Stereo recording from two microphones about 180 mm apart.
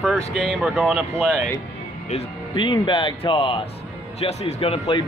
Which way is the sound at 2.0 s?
30° left (ahead or behind).